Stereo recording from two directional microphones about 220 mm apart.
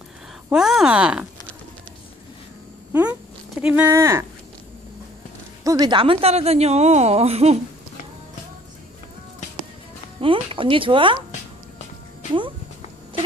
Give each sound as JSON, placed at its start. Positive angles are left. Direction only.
{"t": 0.5, "sound": "speech", "side_deg": 0}
{"t": 2.9, "sound": "a sound", "side_deg": -5}
{"t": 5.6, "sound": "a woman's voice", "side_deg": -15}
{"t": 10.2, "sound": "a woman's voice", "side_deg": -25}